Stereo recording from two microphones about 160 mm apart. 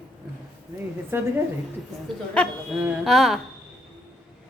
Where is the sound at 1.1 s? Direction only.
15° right (ahead or behind).